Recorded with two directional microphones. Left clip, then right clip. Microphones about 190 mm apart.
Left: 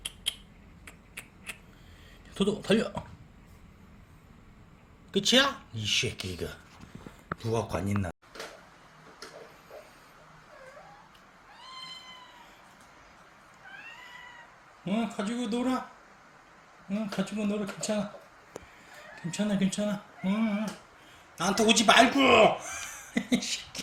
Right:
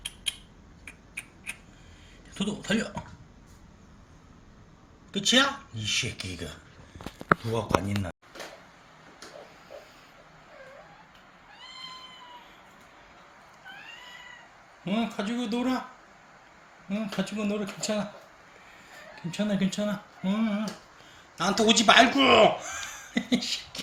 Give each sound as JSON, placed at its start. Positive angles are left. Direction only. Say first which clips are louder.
{"t": 0.3, "sound": "a sound", "louder": "right 1 dB", "side_deg": 35}
{"t": 2.3, "sound": "speech", "louder": "left 3 dB", "side_deg": 30}
{"t": 5.1, "sound": "speech", "louder": "right 1 dB", "side_deg": 25}
{"t": 14.8, "sound": "speech", "louder": "right 2 dB", "side_deg": 0}
{"t": 16.9, "sound": "speech", "louder": "right 1 dB", "side_deg": 0}
{"t": 19.1, "sound": "speech", "louder": "right 2 dB", "side_deg": 0}